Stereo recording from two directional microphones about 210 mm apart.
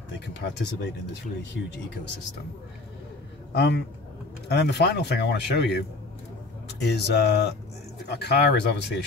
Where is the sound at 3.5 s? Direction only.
50° left (ahead or behind).